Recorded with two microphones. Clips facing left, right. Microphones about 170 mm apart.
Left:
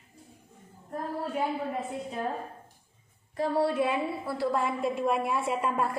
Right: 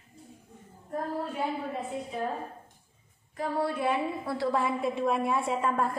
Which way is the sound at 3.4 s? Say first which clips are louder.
Left 3 dB; 30° left (ahead or behind).